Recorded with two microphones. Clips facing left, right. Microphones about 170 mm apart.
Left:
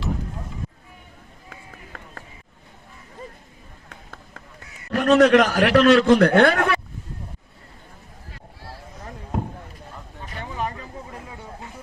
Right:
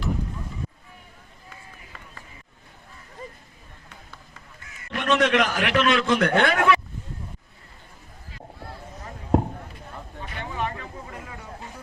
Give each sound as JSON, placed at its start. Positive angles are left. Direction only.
{"t": 1.5, "sound": "run", "side_deg": 65}
{"t": 3.8, "sound": "a sound", "side_deg": 90}
{"t": 4.9, "sound": "a man's voice", "side_deg": 40}